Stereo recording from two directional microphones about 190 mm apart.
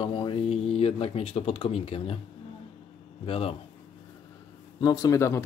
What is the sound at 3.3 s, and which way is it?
Speech, 30° left (ahead or behind).